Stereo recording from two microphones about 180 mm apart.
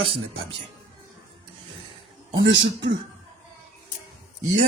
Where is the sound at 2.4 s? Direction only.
85° right.